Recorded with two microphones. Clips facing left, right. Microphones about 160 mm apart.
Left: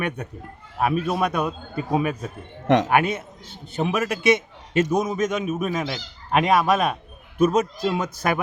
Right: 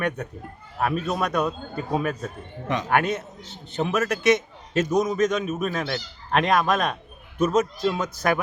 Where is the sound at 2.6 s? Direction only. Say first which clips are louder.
Left 9 dB; 90° left.